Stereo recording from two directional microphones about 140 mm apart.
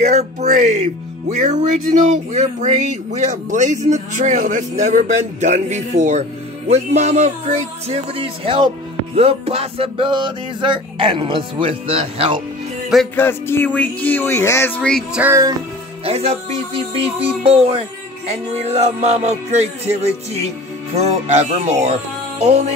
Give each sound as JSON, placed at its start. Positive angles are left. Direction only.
{"t": 0.0, "sound": "speech", "side_deg": -55}
{"t": 9.1, "sound": "music", "side_deg": -45}
{"t": 13.1, "sound": "speech", "side_deg": 15}
{"t": 15.2, "sound": "music", "side_deg": -15}
{"t": 16.0, "sound": "speech", "side_deg": -45}